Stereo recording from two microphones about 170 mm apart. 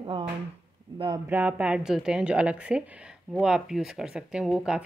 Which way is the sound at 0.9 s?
25° right (ahead or behind).